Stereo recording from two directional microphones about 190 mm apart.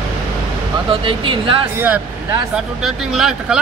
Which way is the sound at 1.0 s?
25° right (ahead or behind).